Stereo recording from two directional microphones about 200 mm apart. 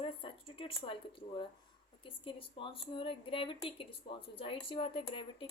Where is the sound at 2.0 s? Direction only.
25° left (ahead or behind).